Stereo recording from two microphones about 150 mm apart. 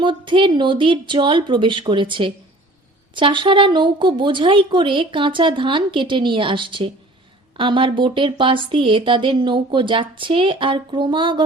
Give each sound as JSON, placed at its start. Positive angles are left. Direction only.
{"t": 0.0, "sound": "a woman's voice", "side_deg": -30}